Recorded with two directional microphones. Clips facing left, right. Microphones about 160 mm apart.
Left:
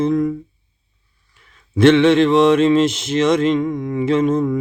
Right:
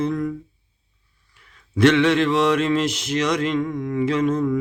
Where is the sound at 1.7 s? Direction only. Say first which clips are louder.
Left 5 dB; 25° left (ahead or behind).